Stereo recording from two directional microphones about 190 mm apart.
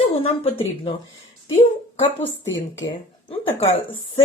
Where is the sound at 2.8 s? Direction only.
30° left (ahead or behind).